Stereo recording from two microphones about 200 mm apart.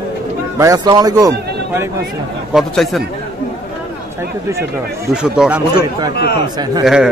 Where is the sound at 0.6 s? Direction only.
20° right (ahead or behind).